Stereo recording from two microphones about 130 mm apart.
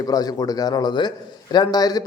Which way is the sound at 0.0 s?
30° left (ahead or behind).